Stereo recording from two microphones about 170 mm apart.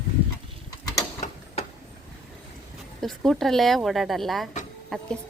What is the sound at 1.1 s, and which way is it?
Gears, 40° left (ahead or behind).